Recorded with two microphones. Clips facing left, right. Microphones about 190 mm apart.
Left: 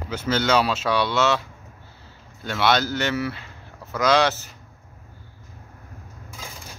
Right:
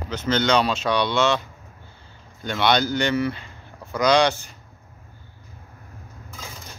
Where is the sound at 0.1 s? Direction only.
5° left (ahead or behind).